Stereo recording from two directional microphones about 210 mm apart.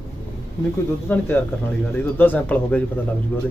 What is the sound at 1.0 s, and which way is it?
Speech, 10° left (ahead or behind).